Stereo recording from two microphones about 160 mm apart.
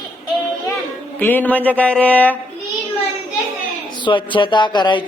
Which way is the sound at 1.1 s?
10° left (ahead or behind).